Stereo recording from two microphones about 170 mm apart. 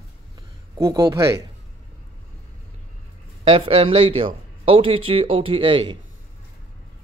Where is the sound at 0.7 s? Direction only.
20° right (ahead or behind).